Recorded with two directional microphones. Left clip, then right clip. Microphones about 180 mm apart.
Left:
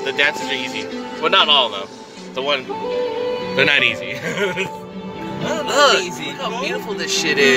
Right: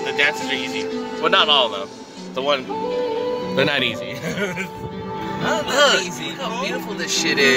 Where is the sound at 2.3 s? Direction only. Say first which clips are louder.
Even; 10° right (ahead or behind).